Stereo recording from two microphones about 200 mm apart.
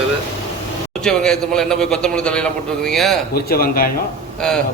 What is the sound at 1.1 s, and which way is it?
A man's voice, centre (ahead or behind).